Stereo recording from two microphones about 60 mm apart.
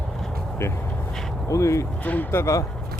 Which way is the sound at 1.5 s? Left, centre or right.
Left.